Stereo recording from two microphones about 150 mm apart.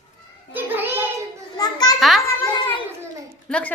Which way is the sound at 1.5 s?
25° left (ahead or behind).